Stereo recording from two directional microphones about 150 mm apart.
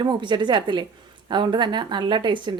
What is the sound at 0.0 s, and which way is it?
A woman's voice, 30° right (ahead or behind).